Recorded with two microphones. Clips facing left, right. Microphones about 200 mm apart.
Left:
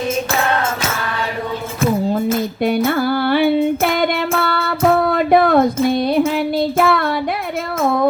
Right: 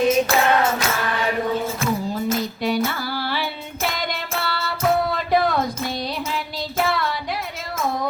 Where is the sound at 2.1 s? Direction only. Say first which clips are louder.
Left 6 dB; 55° left (ahead or behind).